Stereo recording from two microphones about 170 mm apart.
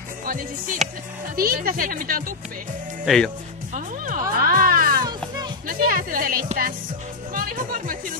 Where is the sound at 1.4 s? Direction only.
60° right (ahead or behind).